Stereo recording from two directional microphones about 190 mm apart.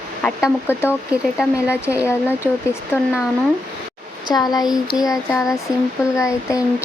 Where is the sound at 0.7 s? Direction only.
10° left (ahead or behind).